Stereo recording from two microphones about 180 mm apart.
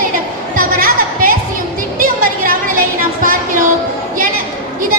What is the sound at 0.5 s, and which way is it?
Music, 50° right (ahead or behind).